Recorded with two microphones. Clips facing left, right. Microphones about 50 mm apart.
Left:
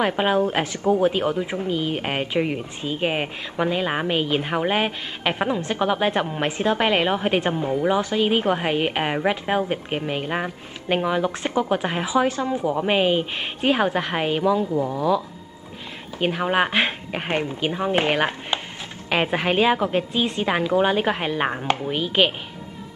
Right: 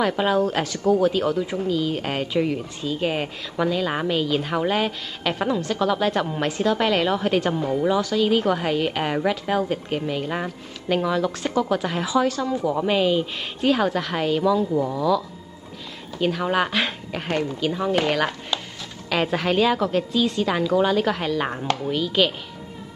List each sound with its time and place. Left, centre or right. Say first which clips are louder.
0.0 s speech: even; left
14.7 s speech: right 1 dB; centre
15.0 s speech: even; left